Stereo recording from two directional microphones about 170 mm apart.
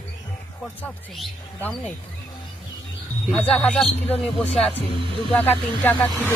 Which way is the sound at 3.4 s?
5° left (ahead or behind).